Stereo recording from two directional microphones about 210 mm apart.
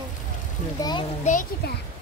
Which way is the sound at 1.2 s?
40° left (ahead or behind).